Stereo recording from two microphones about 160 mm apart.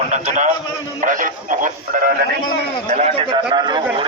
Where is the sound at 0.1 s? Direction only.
50° right (ahead or behind).